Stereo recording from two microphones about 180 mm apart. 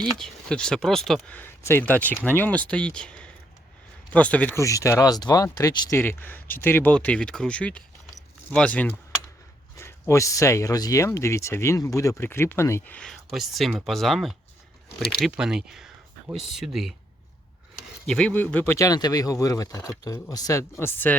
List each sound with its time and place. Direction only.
0.0 s speech: 5° left (ahead or behind)
13.0 s speech: centre (ahead or behind)
18.0 s a man's voice: 5° left (ahead or behind)